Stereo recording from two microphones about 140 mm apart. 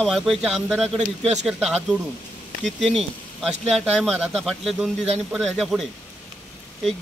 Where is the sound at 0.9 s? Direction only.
55° right (ahead or behind).